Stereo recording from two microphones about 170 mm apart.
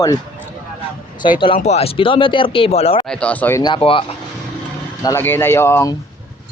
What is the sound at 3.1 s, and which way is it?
Speech, 10° left (ahead or behind).